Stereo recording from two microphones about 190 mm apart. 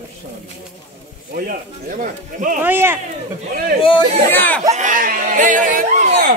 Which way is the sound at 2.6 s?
10° right (ahead or behind).